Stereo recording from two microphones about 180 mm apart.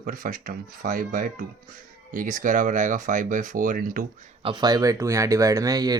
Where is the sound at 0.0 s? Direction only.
50° right (ahead or behind).